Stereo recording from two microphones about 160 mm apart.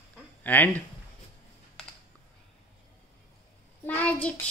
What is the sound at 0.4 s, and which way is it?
Speech, 10° left (ahead or behind).